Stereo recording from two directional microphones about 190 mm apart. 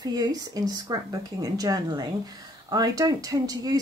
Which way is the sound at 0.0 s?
20° right (ahead or behind).